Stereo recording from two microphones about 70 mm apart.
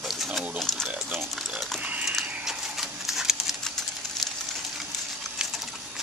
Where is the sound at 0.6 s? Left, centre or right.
Centre.